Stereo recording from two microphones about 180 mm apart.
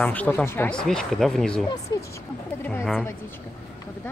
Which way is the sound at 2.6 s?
10° left (ahead or behind).